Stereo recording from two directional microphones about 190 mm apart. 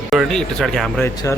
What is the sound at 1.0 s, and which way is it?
Speech, 15° left (ahead or behind).